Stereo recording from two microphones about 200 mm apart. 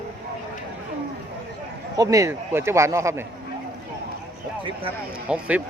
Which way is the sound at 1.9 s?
15° right (ahead or behind).